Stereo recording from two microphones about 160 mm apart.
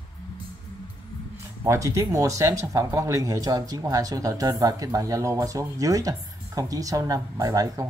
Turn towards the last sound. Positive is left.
turn(degrees=-20)  # may be behind; listen again after turning